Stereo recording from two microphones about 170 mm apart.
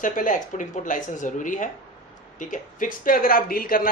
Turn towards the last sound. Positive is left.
turn(degrees=55)  # may be behind; listen again after turning